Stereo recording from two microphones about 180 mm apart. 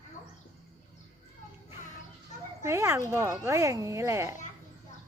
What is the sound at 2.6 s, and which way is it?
Speech, 15° right (ahead or behind).